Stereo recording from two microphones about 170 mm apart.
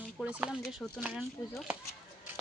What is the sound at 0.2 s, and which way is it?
Speech, 5° right (ahead or behind).